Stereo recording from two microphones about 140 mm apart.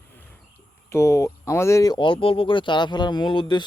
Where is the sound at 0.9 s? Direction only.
20° left (ahead or behind).